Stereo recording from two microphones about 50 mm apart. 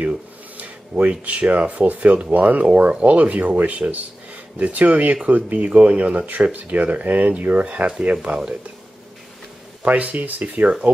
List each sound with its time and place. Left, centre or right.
0.6 s speech: right
9.8 s speech: right